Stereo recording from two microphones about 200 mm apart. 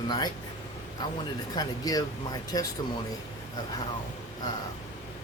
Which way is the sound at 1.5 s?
20° left (ahead or behind).